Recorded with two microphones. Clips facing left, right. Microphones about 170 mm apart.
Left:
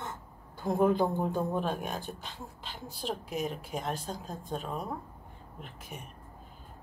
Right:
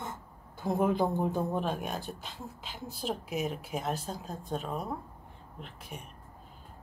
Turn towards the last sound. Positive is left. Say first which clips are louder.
# even
turn(degrees=0)  # may be behind; listen again after turning